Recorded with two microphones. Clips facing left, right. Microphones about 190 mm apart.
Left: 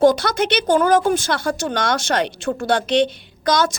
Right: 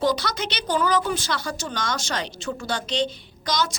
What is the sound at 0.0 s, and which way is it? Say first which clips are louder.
A woman's voice: left 9 dB; 50° left (ahead or behind).